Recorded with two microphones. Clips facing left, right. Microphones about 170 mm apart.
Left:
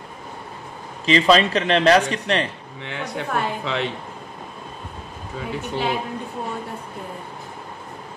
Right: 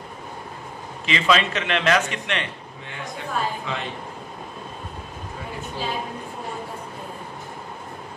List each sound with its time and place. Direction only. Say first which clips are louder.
1.0 s a man's voice: left 5 dB; 35° left (ahead or behind)
2.8 s speech: left 6 dB; 70° left (ahead or behind)
5.6 s speech: left 5 dB; 70° left (ahead or behind)